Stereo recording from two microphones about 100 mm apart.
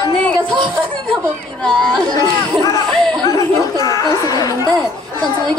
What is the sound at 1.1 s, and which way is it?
Speech, 5° left (ahead or behind).